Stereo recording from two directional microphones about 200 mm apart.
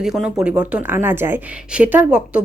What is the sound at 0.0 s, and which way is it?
A woman's voice, 5° right (ahead or behind).